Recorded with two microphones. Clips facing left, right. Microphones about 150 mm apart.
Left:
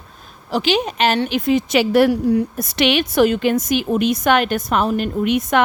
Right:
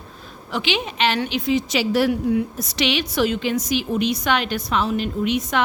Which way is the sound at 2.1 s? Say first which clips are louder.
Left 3 dB; 40° left (ahead or behind).